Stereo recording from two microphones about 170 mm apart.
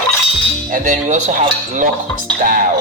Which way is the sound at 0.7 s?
45° right (ahead or behind).